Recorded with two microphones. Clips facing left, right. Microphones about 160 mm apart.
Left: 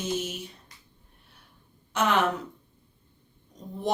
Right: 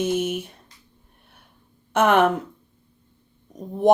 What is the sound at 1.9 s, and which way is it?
Speech, 55° right (ahead or behind).